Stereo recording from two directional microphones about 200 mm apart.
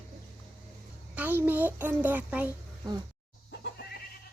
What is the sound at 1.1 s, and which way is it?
A child's voice, 10° right (ahead or behind).